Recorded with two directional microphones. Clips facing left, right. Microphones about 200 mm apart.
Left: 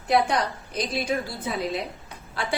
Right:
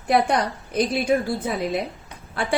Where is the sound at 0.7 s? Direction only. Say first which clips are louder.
Right 6 dB; 55° right (ahead or behind).